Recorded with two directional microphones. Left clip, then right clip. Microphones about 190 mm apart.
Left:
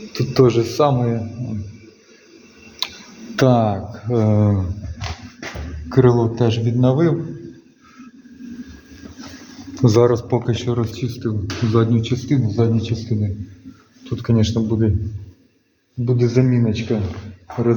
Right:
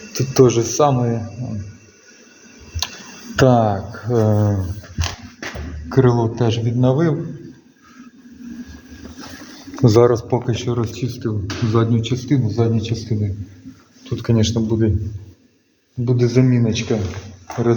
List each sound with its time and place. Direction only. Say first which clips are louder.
0.1 s a man's voice: right 1 dB; 5° left (ahead or behind)
2.8 s tick-tock: even; 5° left (ahead or behind)
3.3 s speech: right 2 dB; 5° left (ahead or behind)
4.4 s speech: left 1 dB; 20° left (ahead or behind)
5.9 s a man's voice: left 1 dB; 10° left (ahead or behind)
10.0 s a man's voice: right 1 dB; 15° left (ahead or behind); by 14.9 s centre (ahead or behind)
16.0 s speech: right 1 dB; centre (ahead or behind)